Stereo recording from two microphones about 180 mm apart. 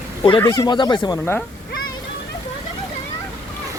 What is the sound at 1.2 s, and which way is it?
Speech, 10° left (ahead or behind).